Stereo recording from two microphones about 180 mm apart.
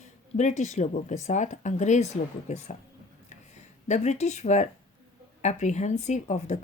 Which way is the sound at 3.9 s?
40° left (ahead or behind).